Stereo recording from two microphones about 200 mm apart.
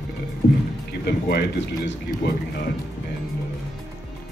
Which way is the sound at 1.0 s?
55° left (ahead or behind).